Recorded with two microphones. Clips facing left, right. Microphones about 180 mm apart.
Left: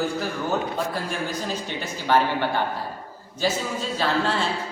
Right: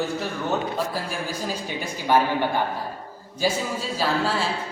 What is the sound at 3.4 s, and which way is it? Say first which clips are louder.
Speech: even; 10° right (ahead or behind).